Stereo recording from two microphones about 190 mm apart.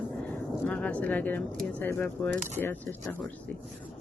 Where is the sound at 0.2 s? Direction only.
5° left (ahead or behind).